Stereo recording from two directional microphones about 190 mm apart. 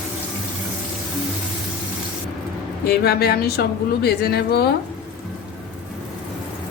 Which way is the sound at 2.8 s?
55° left (ahead or behind).